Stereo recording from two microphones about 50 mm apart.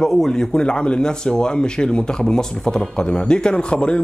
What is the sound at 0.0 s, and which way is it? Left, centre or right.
Speech, centre.